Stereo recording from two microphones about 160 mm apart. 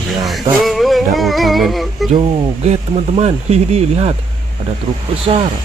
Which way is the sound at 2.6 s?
45° right (ahead or behind).